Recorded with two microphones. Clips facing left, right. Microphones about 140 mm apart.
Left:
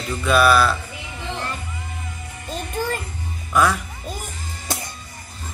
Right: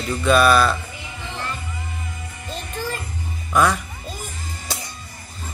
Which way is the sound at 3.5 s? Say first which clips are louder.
Even; centre (ahead or behind).